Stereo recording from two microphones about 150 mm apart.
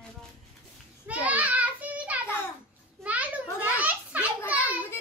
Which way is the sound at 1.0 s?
10° right (ahead or behind).